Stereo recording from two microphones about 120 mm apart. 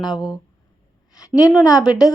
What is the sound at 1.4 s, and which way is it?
Speech, 30° left (ahead or behind).